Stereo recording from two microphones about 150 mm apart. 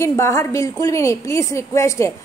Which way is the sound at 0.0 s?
20° left (ahead or behind).